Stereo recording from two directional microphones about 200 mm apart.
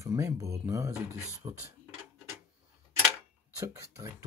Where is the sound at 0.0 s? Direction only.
15° right (ahead or behind).